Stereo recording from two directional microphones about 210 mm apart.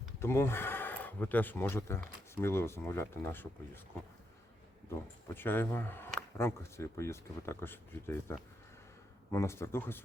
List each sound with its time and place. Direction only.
0.2 s speech: 10° left (ahead or behind)
4.9 s speech: 10° left (ahead or behind)